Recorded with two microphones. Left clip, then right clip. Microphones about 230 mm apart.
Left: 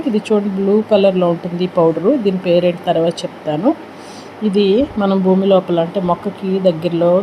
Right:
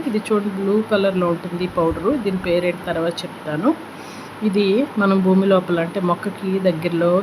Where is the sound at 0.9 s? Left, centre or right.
Centre.